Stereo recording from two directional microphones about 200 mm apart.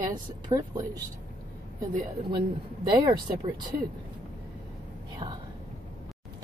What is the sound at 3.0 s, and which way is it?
Speech, 20° right (ahead or behind).